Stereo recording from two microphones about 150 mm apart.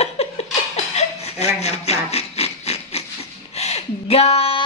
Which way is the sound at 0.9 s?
45° left (ahead or behind).